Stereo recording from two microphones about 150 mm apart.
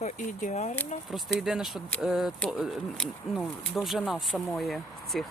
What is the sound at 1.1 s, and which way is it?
Speech, centre (ahead or behind).